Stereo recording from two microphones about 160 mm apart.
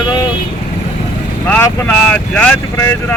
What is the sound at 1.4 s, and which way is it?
Speech, 10° left (ahead or behind).